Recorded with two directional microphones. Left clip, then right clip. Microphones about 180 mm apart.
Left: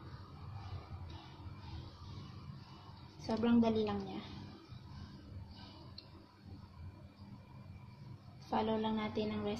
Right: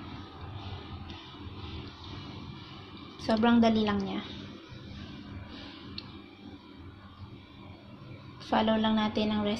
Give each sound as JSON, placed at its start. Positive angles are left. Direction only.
{"t": 3.3, "sound": "a woman's voice", "side_deg": -20}
{"t": 8.5, "sound": "a woman's voice", "side_deg": -15}